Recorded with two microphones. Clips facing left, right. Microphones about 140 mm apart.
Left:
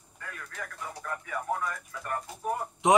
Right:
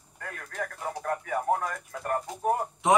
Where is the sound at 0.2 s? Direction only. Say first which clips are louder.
Right 6 dB; 50° right (ahead or behind).